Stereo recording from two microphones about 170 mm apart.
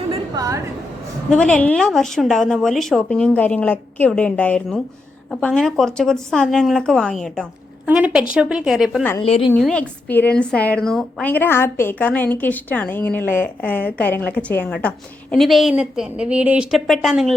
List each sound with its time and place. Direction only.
0.3 s a woman's voice: 20° right (ahead or behind)
1.3 s a woman's voice: 5° left (ahead or behind)
7.9 s a woman's voice: 10° right (ahead or behind)
9.2 s a woman's voice: 35° left (ahead or behind)
9.5 s a woman's voice: 5° left (ahead or behind)